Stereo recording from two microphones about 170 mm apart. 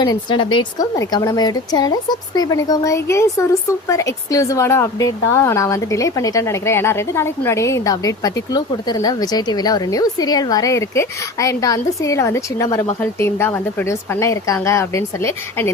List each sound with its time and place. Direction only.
0.0 s a woman's voice: 25° left (ahead or behind)